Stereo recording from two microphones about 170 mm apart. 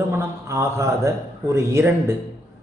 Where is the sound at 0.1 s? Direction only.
15° right (ahead or behind).